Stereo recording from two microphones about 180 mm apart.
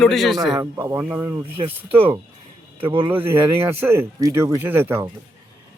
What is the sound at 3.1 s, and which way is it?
Speech, 10° right (ahead or behind).